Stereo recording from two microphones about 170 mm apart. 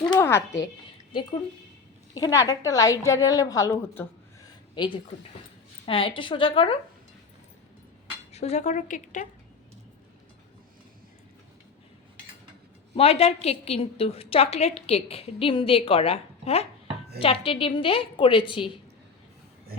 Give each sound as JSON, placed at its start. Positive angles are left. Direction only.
{"t": 0.0, "sound": "speech", "side_deg": 20}
{"t": 2.1, "sound": "a woman's voice", "side_deg": 20}
{"t": 4.4, "sound": "a sound", "side_deg": 25}
{"t": 5.8, "sound": "a woman's voice", "side_deg": 30}
{"t": 8.3, "sound": "speech", "side_deg": 40}
{"t": 12.9, "sound": "a woman's voice", "side_deg": 35}